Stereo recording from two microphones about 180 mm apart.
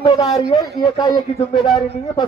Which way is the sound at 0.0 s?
25° left (ahead or behind).